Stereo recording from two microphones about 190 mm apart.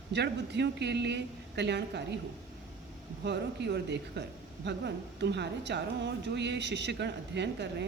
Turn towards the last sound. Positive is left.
turn(degrees=-65)  # may be behind; listen again after turning